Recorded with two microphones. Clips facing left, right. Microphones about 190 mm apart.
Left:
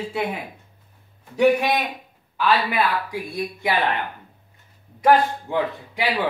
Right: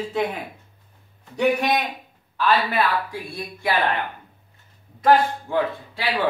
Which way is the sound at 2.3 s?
15° left (ahead or behind).